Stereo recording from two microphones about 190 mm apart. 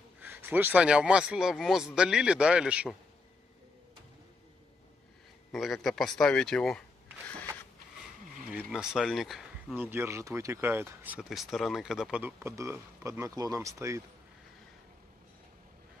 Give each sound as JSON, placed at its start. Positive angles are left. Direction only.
{"t": 0.2, "sound": "speech", "side_deg": -10}
{"t": 5.5, "sound": "speech", "side_deg": 0}
{"t": 8.5, "sound": "speech", "side_deg": -5}
{"t": 9.8, "sound": "speech", "side_deg": -10}